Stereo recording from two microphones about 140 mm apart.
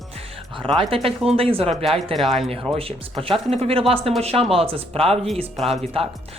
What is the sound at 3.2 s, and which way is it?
Speech, 40° right (ahead or behind).